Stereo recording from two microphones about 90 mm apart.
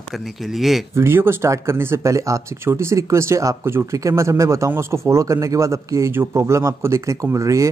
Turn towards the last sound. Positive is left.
turn(degrees=-40)  # may be behind; listen again after turning